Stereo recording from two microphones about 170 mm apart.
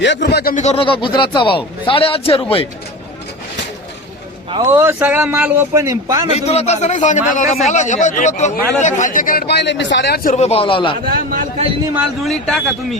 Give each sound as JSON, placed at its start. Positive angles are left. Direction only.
{"t": 0.0, "sound": "speech", "side_deg": 90}
{"t": 0.5, "sound": "speech", "side_deg": 40}
{"t": 4.6, "sound": "a man's voice", "side_deg": -15}
{"t": 6.3, "sound": "a man's voice", "side_deg": 40}
{"t": 10.2, "sound": "speech", "side_deg": 40}
{"t": 11.9, "sound": "speech", "side_deg": 0}